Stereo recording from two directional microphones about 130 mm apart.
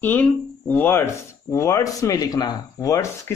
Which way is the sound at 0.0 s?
10° left (ahead or behind).